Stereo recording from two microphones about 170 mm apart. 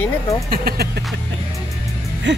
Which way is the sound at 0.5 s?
60° right (ahead or behind).